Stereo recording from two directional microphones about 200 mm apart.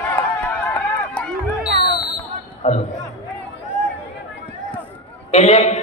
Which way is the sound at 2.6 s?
35° left (ahead or behind).